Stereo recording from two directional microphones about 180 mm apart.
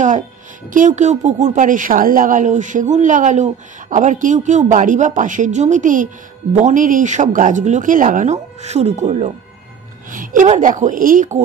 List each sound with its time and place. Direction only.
0.7 s a woman's voice: 45° right (ahead or behind)